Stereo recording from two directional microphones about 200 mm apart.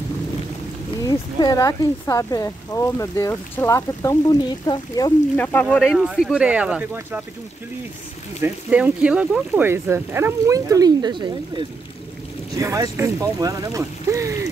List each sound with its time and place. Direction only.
1.0 s speech: 20° left (ahead or behind)
5.3 s speech: 10° left (ahead or behind); by 7.2 s 10° right (ahead or behind)
8.4 s speech: 5° right (ahead or behind)